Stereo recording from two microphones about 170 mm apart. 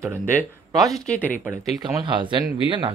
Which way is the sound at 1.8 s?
25° right (ahead or behind).